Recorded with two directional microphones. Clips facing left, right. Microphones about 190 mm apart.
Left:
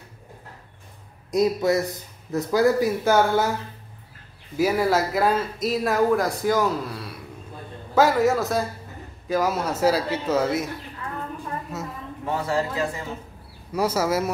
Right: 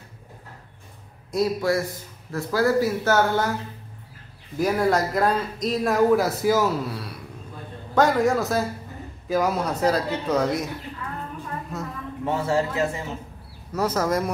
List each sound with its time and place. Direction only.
1.3 s speech: 20° left (ahead or behind)
4.6 s speech: 5° left (ahead or behind)
11.7 s a sound: 5° left (ahead or behind)
12.3 s a man's voice: 25° right (ahead or behind)
13.7 s speech: 10° left (ahead or behind)